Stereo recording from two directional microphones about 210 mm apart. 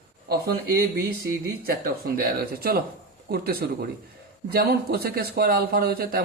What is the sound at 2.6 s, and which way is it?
Speech, 45° right (ahead or behind).